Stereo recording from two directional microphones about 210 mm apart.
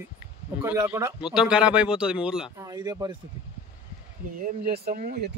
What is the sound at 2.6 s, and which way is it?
Speech, 15° right (ahead or behind).